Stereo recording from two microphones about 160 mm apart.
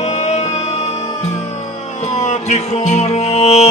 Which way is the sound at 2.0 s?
45° left (ahead or behind).